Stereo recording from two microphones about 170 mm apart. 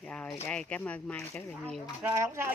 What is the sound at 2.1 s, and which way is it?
Speech, 15° right (ahead or behind).